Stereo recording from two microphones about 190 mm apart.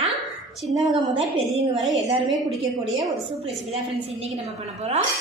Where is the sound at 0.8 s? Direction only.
25° right (ahead or behind).